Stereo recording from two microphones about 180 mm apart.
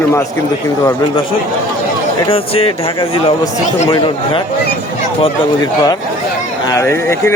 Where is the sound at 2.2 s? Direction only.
30° left (ahead or behind).